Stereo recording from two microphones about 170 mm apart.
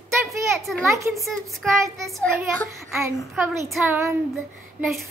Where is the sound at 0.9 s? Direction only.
15° right (ahead or behind).